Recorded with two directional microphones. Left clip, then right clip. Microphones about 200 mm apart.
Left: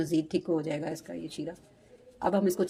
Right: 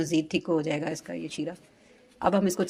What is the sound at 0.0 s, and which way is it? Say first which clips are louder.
A woman's voice: right 2 dB; 10° right (ahead or behind).